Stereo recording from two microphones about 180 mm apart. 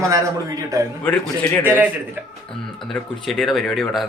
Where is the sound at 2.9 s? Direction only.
Centre (ahead or behind).